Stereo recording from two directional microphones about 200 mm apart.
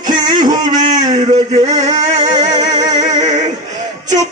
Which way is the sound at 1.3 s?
20° right (ahead or behind).